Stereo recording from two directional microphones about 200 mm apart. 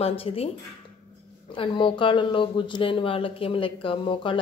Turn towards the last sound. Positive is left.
turn(degrees=25)  # may be behind; listen again after turning